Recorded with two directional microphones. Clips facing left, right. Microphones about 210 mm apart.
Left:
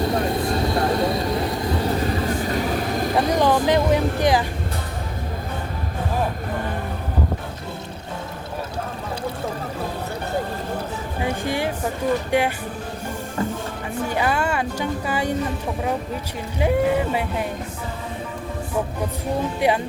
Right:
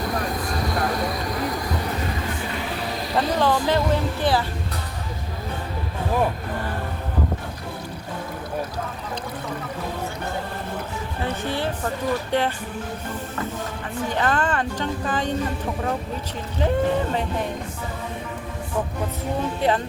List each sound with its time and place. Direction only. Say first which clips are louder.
0.0 s vehicle: left 5 dB; 25° left (ahead or behind); by 3.2 s 50° left (ahead or behind)
3.2 s speech: left 2 dB; 15° left (ahead or behind)
11.2 s speech: left 2 dB; 15° left (ahead or behind)
14.1 s speech: even; 10° left (ahead or behind)
16.6 s speech: left 2 dB; 10° left (ahead or behind)
19.5 s speech: left 1 dB; 10° left (ahead or behind)